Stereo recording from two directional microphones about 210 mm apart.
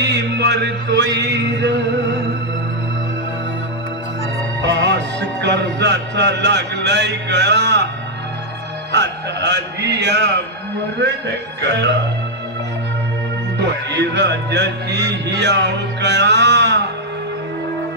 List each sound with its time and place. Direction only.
0.0 s music: 55° right (ahead or behind)
4.7 s music: 55° right (ahead or behind)
8.9 s music: 55° right (ahead or behind)
13.8 s a man's voice: 55° right (ahead or behind)
15.2 s music: 55° right (ahead or behind)